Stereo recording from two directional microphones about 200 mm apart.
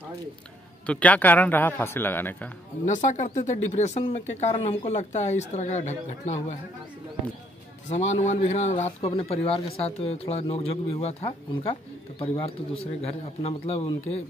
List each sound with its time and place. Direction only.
0.8 s a man's voice: 5° left (ahead or behind)
2.8 s speech: 40° left (ahead or behind)
7.9 s speech: 35° left (ahead or behind)